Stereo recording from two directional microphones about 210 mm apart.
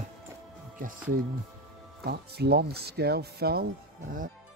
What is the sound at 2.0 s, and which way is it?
Speech, 50° right (ahead or behind).